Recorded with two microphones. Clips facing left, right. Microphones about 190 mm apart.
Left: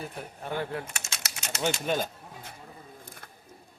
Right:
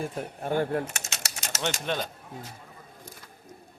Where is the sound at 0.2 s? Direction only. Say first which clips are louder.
Right 6 dB; 45° right (ahead or behind).